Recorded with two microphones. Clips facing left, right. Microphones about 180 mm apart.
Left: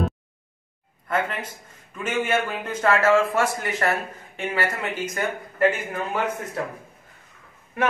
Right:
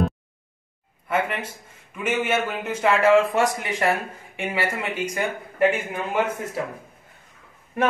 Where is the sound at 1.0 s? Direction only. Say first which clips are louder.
Right 1 dB; 10° right (ahead or behind).